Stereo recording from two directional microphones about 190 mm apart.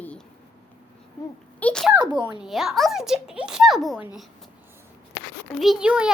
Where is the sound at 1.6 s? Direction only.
5° left (ahead or behind).